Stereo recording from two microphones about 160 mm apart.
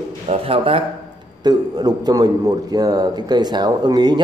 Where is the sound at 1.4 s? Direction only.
25° right (ahead or behind).